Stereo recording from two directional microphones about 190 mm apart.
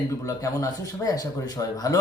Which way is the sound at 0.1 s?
20° left (ahead or behind).